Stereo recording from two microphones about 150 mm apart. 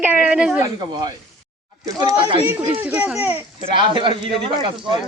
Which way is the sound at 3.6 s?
35° right (ahead or behind).